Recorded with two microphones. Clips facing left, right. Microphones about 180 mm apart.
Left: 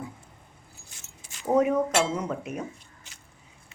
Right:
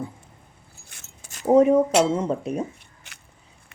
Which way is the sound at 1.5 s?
30° right (ahead or behind).